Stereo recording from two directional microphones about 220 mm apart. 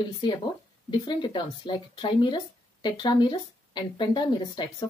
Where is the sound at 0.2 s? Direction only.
20° left (ahead or behind).